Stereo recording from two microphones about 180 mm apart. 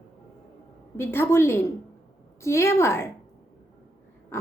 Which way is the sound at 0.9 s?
15° left (ahead or behind).